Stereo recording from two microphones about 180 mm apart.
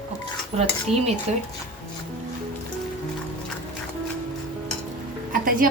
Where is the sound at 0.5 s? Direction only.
35° right (ahead or behind).